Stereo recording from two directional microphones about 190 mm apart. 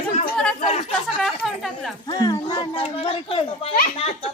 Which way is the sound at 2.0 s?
20° left (ahead or behind).